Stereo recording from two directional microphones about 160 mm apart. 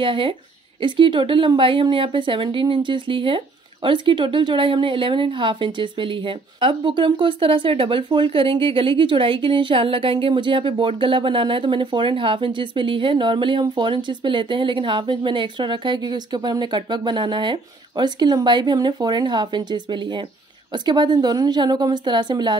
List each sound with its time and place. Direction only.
0.0 s a woman's voice: 30° right (ahead or behind)